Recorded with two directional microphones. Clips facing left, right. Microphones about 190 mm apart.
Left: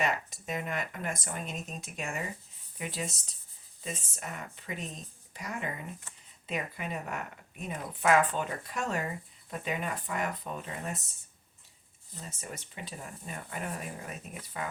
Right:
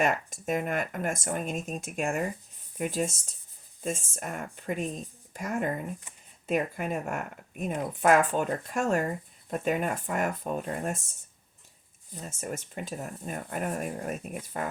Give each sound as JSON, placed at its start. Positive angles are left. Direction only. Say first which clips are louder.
{"t": 0.0, "sound": "speech", "louder": "right 5 dB", "side_deg": -50}
{"t": 12.4, "sound": "speech", "louder": "right 9 dB", "side_deg": -50}